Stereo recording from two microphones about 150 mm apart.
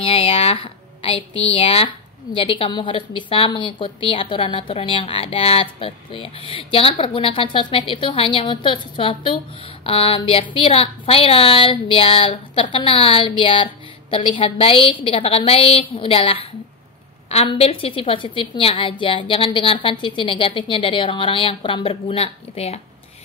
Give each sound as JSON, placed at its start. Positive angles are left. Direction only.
{"t": 0.0, "sound": "a woman's voice", "side_deg": 40}
{"t": 17.5, "sound": "a woman's voice", "side_deg": 40}